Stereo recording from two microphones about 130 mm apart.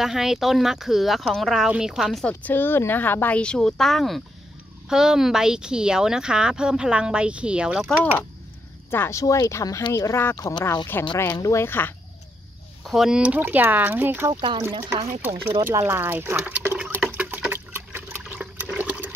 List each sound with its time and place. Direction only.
0.0 s speech: 5° right (ahead or behind)
2.2 s speech: 15° left (ahead or behind); by 7.9 s 5° right (ahead or behind)
8.9 s speech: 20° left (ahead or behind)
12.8 s speech: centre (ahead or behind)
17.1 s water: 10° right (ahead or behind)